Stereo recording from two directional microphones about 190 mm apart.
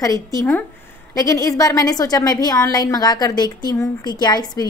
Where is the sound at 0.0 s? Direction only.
20° left (ahead or behind).